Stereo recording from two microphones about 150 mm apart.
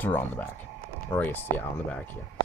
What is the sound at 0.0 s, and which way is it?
Speech, 10° left (ahead or behind).